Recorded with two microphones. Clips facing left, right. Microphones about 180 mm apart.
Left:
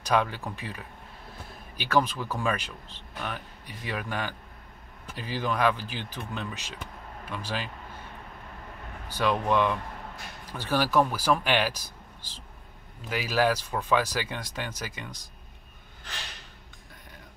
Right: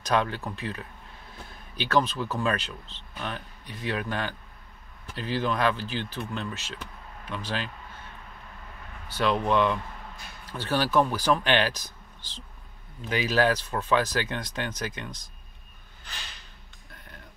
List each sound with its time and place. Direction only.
0.0 s speech: 10° left (ahead or behind)
9.1 s speech: 10° left (ahead or behind)